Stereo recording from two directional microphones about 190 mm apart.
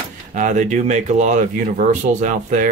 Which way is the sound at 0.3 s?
40° right (ahead or behind).